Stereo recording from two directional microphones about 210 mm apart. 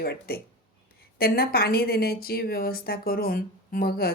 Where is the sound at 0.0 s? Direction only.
45° left (ahead or behind).